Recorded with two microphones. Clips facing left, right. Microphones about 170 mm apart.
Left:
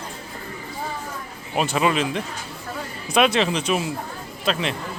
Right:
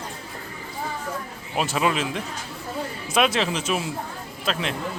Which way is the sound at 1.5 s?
Centre (ahead or behind).